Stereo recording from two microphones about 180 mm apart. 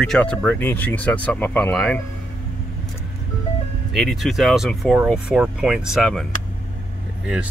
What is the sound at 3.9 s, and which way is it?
Speech, centre (ahead or behind).